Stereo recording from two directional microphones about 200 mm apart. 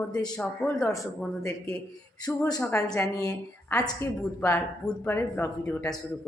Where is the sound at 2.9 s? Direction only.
15° left (ahead or behind).